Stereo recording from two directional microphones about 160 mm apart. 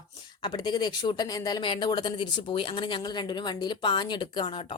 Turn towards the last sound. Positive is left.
turn(degrees=30)  # may be behind; listen again after turning